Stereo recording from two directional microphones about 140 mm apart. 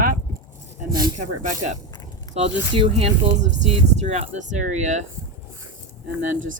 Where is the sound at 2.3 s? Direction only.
45° right (ahead or behind).